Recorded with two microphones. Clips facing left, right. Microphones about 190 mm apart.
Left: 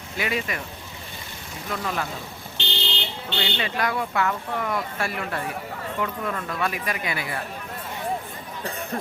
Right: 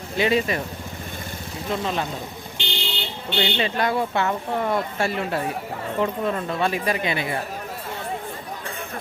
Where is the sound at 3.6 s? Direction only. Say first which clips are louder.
Right 2 dB; 25° right (ahead or behind).